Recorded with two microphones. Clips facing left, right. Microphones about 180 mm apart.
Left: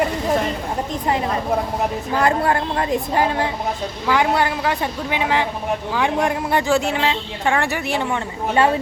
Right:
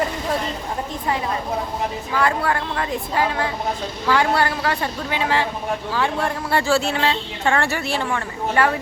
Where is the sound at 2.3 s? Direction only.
30° left (ahead or behind).